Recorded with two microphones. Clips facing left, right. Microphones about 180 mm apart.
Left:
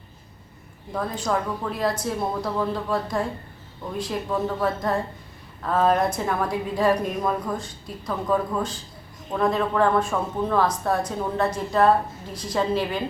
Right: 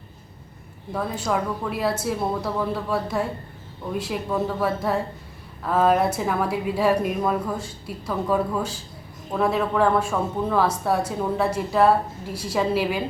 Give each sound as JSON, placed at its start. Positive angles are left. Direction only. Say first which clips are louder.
{"t": 0.9, "sound": "a woman's voice", "louder": "even", "side_deg": -5}